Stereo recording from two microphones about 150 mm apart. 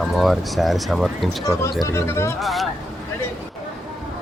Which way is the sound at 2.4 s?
Centre (ahead or behind).